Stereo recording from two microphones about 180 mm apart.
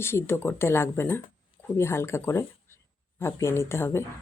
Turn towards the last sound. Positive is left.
turn(degrees=15)  # may be behind; listen again after turning